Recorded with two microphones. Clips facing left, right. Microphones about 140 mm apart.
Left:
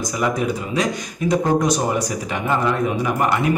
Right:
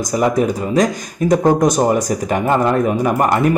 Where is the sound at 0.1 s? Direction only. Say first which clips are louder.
Right 7 dB; 40° right (ahead or behind).